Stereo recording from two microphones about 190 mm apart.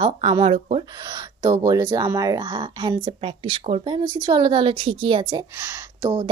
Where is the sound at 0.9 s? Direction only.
20° right (ahead or behind).